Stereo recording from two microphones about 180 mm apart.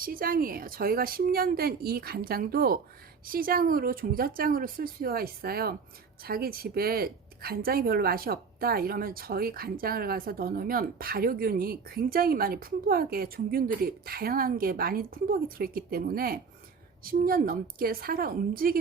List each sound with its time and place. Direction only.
0.0 s a woman's voice: 55° right (ahead or behind)